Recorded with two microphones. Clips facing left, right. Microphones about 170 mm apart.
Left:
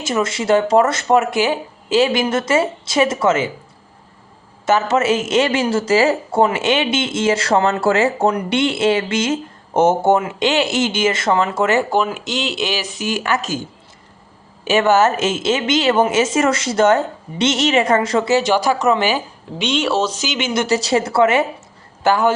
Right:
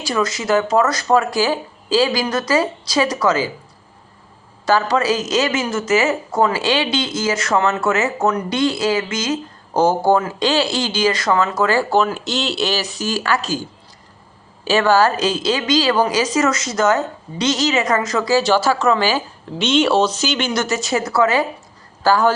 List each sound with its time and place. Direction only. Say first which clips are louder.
0.0 s speech: left 1 dB; 25° left (ahead or behind)
4.6 s speech: left 1 dB; 20° left (ahead or behind); by 20.1 s 5° left (ahead or behind)
20.2 s speech: even; 20° left (ahead or behind)